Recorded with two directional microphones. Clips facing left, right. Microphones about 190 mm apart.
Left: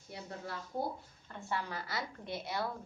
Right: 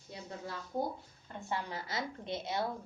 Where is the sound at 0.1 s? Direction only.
20° right (ahead or behind).